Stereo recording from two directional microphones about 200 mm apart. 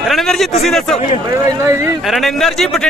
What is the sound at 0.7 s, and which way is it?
Speech, centre (ahead or behind).